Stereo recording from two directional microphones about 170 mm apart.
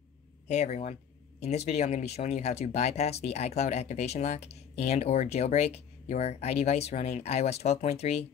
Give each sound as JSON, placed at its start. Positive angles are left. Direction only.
{"t": 0.5, "sound": "speech", "side_deg": 40}